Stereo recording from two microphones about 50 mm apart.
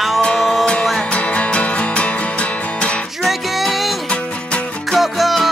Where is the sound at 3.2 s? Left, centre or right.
Centre.